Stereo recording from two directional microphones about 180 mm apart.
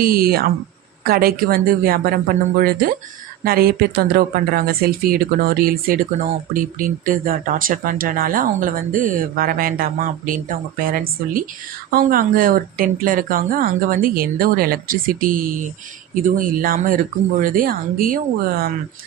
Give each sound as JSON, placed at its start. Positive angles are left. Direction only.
{"t": 0.0, "sound": "speech", "side_deg": -55}